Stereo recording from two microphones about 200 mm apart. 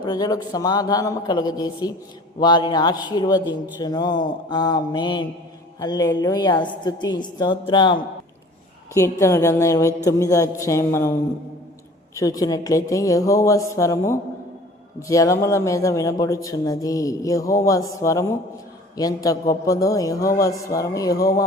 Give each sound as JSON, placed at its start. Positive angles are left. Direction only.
{"t": 0.0, "sound": "a man's voice", "side_deg": 20}